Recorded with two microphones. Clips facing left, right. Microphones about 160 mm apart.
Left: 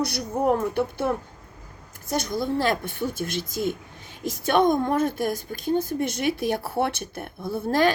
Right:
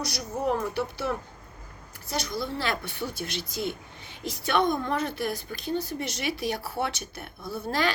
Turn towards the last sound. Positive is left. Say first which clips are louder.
# left 6 dB
turn(degrees=50)  # may be behind; listen again after turning